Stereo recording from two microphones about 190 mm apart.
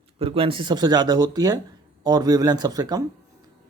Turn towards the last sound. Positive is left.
turn(degrees=-20)  # may be behind; listen again after turning